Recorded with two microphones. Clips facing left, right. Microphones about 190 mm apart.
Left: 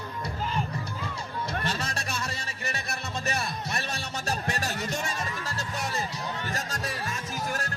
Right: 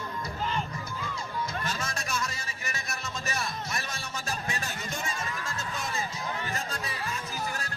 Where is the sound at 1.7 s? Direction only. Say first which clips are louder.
Even; 35° left (ahead or behind).